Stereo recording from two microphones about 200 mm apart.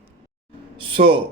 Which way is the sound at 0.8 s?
25° right (ahead or behind).